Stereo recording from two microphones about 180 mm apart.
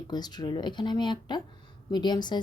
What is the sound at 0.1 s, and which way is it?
Speech, 25° left (ahead or behind).